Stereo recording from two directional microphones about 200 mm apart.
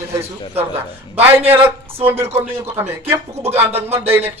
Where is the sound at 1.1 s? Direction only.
10° right (ahead or behind).